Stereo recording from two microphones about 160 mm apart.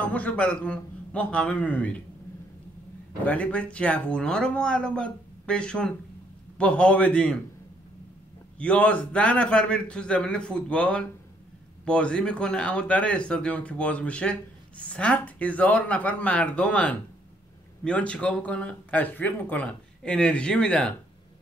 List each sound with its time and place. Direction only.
0.1 s speech: 10° left (ahead or behind)
3.3 s speech: 10° left (ahead or behind)
8.5 s speech: 5° left (ahead or behind)